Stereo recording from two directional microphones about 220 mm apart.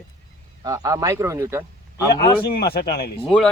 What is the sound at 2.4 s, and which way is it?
Speech, 45° left (ahead or behind).